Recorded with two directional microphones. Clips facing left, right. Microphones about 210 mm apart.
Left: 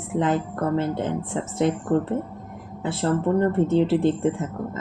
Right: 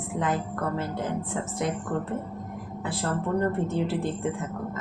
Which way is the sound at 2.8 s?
25° left (ahead or behind).